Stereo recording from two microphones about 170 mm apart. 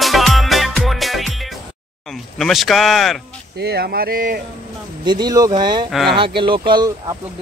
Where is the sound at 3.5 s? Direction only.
75° right (ahead or behind).